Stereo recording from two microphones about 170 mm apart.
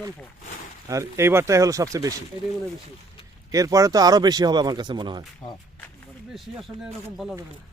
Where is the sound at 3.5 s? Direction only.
20° right (ahead or behind).